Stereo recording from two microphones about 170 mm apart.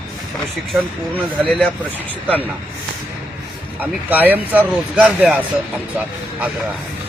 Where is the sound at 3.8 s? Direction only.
10° right (ahead or behind).